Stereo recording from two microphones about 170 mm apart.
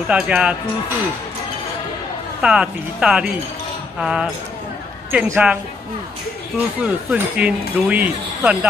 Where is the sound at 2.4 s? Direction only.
5° right (ahead or behind).